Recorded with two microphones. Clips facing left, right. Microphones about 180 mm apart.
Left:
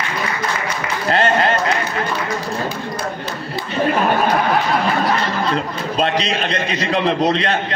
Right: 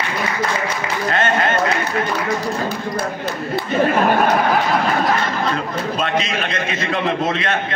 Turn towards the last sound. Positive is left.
turn(degrees=35)  # may be behind; listen again after turning